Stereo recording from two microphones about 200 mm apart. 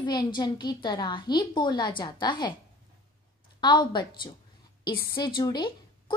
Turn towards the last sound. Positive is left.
turn(degrees=25)  # may be behind; listen again after turning